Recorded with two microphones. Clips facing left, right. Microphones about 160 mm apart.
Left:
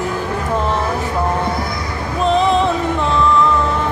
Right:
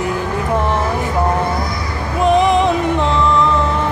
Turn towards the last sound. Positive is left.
turn(degrees=-15)  # may be behind; listen again after turning